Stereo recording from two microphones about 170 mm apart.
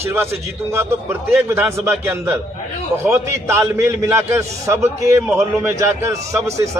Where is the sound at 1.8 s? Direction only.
15° right (ahead or behind).